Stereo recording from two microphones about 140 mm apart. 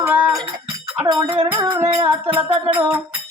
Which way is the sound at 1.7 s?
20° right (ahead or behind).